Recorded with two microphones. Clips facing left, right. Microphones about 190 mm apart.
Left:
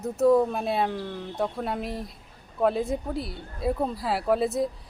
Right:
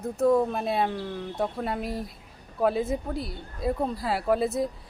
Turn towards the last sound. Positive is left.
turn(degrees=0)  # may be behind; listen again after turning